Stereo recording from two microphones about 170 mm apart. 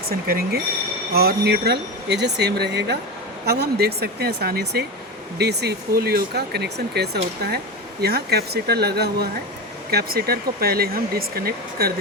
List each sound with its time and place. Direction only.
0.1 s speech: 65° right (ahead or behind)